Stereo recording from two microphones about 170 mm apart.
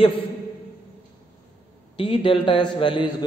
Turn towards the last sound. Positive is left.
turn(degrees=30)  # may be behind; listen again after turning